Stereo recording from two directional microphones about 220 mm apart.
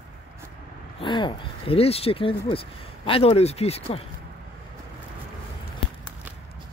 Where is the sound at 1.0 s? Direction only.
20° left (ahead or behind).